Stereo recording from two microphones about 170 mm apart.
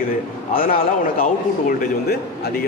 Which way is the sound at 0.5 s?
60° left (ahead or behind).